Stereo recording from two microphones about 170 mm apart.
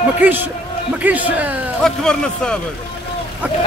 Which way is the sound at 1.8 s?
5° left (ahead or behind).